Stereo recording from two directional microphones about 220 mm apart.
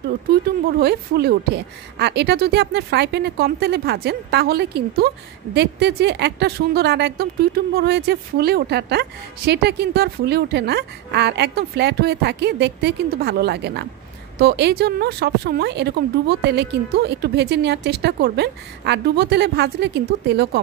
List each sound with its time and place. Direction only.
0.3 s a woman's voice: 45° right (ahead or behind)